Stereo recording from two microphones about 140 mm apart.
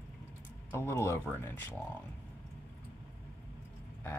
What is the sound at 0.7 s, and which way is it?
Speech, 20° left (ahead or behind).